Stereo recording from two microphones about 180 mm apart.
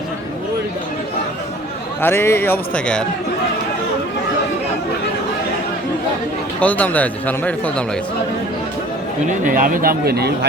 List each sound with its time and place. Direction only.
2.0 s speech: 10° left (ahead or behind)
6.6 s speech: 10° left (ahead or behind)
9.4 s speech: 50° right (ahead or behind)